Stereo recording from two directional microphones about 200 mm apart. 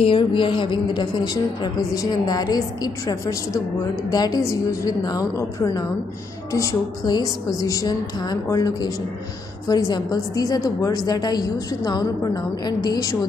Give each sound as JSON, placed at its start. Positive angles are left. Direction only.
{"t": 0.0, "sound": "a woman's voice", "side_deg": 25}